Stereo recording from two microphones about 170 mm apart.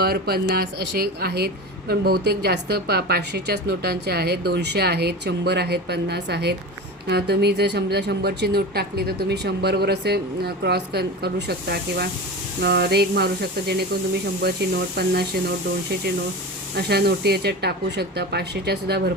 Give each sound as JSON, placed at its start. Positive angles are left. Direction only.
{"t": 0.0, "sound": "speech", "side_deg": -65}
{"t": 16.7, "sound": "speech", "side_deg": -70}